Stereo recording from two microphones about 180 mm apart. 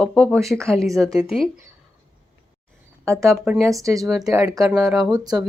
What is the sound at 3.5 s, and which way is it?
Speech, 10° right (ahead or behind).